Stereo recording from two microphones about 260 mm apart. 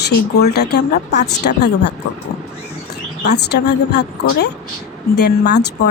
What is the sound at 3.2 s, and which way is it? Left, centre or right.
Speech, left.